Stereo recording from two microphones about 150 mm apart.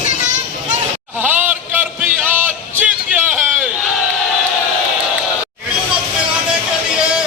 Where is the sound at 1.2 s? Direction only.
10° right (ahead or behind).